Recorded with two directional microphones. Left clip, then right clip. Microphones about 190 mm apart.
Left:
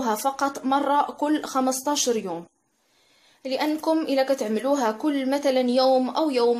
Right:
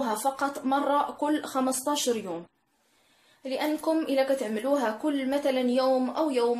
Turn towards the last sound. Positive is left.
turn(degrees=40)  # may be behind; listen again after turning